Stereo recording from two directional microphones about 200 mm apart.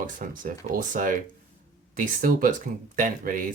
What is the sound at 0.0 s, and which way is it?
Speech, 40° right (ahead or behind).